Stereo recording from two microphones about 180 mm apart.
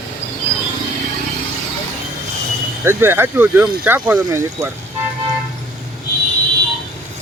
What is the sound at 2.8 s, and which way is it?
Speech, 10° right (ahead or behind).